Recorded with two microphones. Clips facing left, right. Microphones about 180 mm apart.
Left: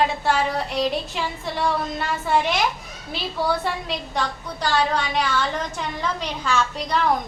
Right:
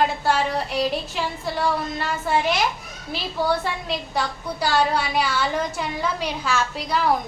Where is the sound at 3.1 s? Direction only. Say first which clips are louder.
Right 1 dB; centre (ahead or behind).